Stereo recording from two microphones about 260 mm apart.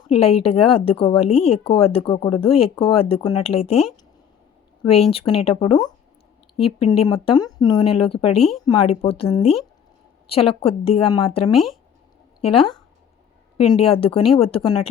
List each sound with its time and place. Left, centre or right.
0.1 s speech: left
5.1 s speech: left
11.5 s speech: centre
12.4 s speech: left
13.7 s speech: left